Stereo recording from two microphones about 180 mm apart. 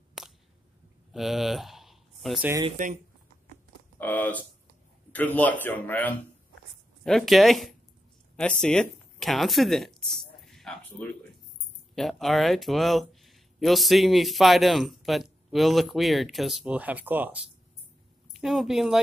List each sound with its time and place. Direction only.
0.2 s a sound: 5° right (ahead or behind)
2.8 s speech: 45° right (ahead or behind)
4.0 s a woman's voice: 10° left (ahead or behind)